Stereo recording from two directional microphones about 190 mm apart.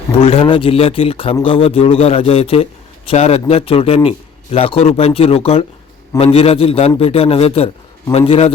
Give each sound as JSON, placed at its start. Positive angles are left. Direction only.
{"t": 0.2, "sound": "a man's voice", "side_deg": 30}